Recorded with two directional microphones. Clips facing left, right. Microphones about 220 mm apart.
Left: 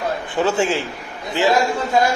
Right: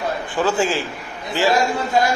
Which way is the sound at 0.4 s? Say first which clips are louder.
Left 1 dB; 20° left (ahead or behind).